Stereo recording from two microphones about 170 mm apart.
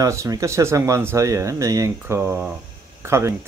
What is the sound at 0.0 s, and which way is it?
Speech, 20° right (ahead or behind).